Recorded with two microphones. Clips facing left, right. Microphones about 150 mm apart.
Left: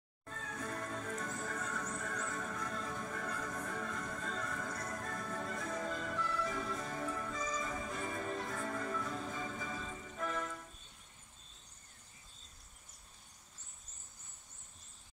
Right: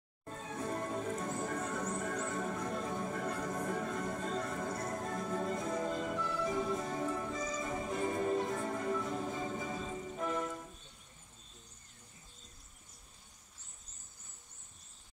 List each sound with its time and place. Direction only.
0.2 s music: 25° right (ahead or behind)